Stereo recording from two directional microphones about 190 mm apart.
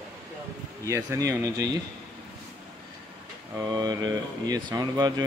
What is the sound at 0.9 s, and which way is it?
Speech, 20° right (ahead or behind).